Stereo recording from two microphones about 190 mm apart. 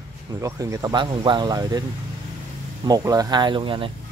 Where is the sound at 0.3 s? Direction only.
15° right (ahead or behind).